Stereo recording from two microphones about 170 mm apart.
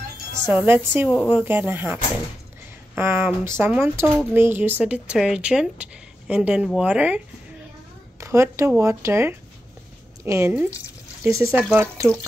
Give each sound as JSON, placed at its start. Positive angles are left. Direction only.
{"t": 0.7, "sound": "speech", "side_deg": -10}
{"t": 3.0, "sound": "speech", "side_deg": -15}
{"t": 8.2, "sound": "speech", "side_deg": -15}